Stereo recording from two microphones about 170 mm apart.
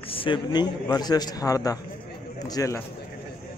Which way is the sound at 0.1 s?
30° left (ahead or behind).